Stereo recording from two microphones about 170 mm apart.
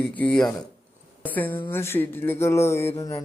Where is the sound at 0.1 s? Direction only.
10° left (ahead or behind).